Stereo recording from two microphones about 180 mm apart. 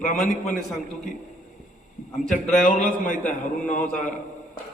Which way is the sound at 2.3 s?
45° left (ahead or behind).